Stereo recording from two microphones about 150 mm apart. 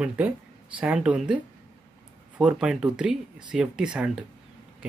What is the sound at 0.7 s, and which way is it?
Speech, 10° right (ahead or behind).